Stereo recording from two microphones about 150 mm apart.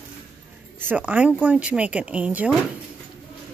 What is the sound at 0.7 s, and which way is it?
Speech, 10° right (ahead or behind).